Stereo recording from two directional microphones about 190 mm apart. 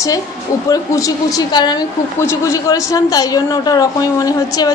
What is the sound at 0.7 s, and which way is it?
A man's voice, 20° left (ahead or behind).